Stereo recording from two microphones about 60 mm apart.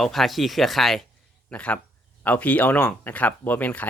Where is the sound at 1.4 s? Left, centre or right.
Left.